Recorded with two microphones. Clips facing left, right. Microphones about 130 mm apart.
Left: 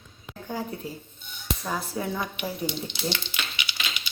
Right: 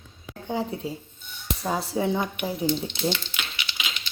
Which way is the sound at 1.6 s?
25° right (ahead or behind).